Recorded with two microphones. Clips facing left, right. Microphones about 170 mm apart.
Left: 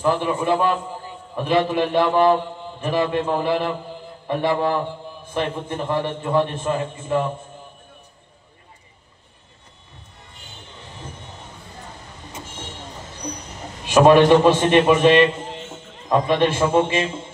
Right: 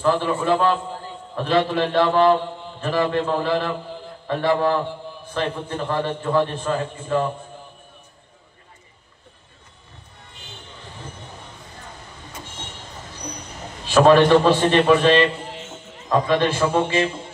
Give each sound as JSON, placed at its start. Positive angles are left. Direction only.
{"t": 0.0, "sound": "a man's voice", "side_deg": 15}
{"t": 13.8, "sound": "a man's voice", "side_deg": 20}